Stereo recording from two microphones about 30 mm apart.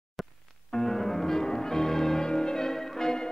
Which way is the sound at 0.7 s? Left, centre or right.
Centre.